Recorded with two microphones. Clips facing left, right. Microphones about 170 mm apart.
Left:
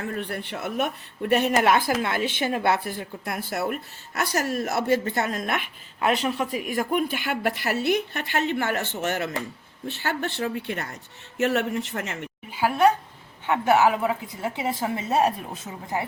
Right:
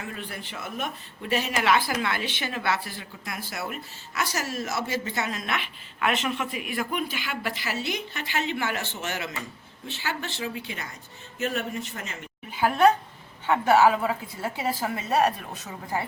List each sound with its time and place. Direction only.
0.2 s a woman's voice: 60° left (ahead or behind)
11.3 s speech: 75° left (ahead or behind)
13.5 s a woman's voice: 15° left (ahead or behind)